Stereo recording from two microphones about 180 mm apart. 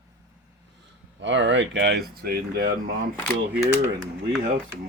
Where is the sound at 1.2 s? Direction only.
90° right; by 2.7 s 55° right (ahead or behind).